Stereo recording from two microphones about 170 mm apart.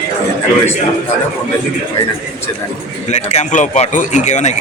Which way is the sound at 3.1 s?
40° left (ahead or behind).